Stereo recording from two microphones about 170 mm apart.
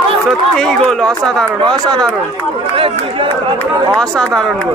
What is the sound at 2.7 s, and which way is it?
Speech, 30° right (ahead or behind).